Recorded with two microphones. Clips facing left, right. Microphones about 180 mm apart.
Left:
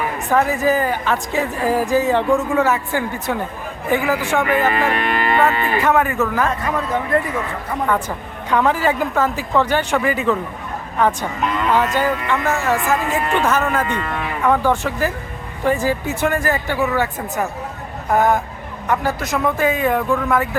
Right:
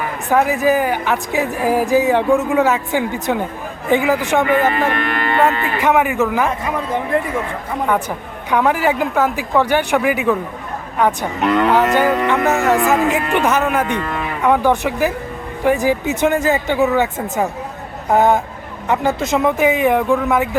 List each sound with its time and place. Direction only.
0.3 s a woman's voice: 10° right (ahead or behind)
4.8 s speech: 10° left (ahead or behind)
5.8 s a woman's voice: 15° right (ahead or behind)
11.3 s cattle: 70° right (ahead or behind)
12.5 s a woman's voice: 20° right (ahead or behind)